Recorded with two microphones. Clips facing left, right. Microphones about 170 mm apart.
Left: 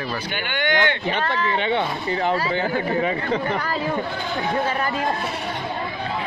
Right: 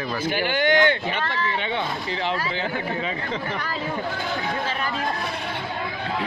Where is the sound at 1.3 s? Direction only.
50° left (ahead or behind).